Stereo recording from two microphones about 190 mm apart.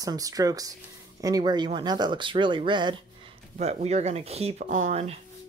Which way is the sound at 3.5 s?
35° right (ahead or behind).